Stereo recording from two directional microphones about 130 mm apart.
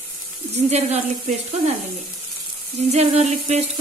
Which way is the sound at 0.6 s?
55° right (ahead or behind).